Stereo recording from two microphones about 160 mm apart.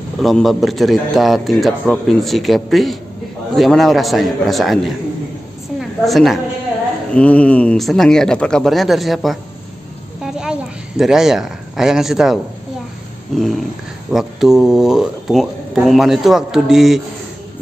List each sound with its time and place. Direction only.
0.2 s speech: centre (ahead or behind)
5.8 s a sound: centre (ahead or behind)
7.2 s a woman's voice: 10° left (ahead or behind)